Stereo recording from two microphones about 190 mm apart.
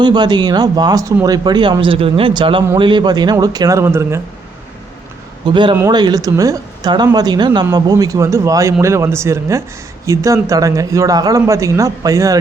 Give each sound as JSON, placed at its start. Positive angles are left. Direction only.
{"t": 0.0, "sound": "speech", "side_deg": -20}
{"t": 5.5, "sound": "a man's voice", "side_deg": -25}